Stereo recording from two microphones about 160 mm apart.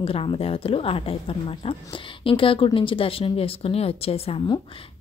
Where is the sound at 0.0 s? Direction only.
35° left (ahead or behind).